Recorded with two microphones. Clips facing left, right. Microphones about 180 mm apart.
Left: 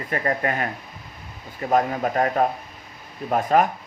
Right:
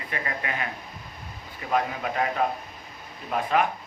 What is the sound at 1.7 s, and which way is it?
Speech, 45° left (ahead or behind).